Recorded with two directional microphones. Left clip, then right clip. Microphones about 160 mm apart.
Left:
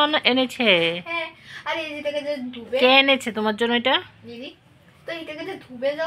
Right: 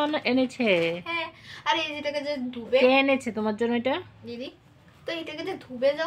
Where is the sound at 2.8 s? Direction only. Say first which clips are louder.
Left 4 dB; 5° right (ahead or behind).